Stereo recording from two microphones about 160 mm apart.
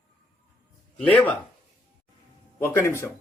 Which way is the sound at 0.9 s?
10° left (ahead or behind).